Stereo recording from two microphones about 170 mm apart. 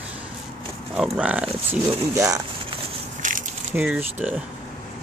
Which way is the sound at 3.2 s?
50° right (ahead or behind).